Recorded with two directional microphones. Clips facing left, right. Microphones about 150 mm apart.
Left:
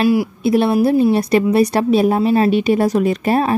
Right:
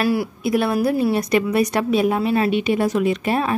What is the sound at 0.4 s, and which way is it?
A woman's voice, 25° left (ahead or behind).